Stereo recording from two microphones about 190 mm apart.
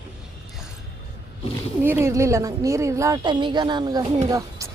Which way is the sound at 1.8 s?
15° right (ahead or behind).